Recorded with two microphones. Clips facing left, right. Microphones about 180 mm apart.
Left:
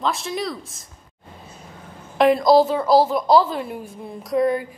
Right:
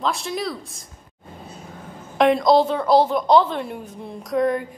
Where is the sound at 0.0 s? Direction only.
Centre (ahead or behind).